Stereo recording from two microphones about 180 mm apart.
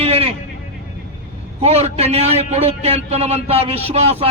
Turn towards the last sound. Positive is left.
turn(degrees=-35)  # may be behind; listen again after turning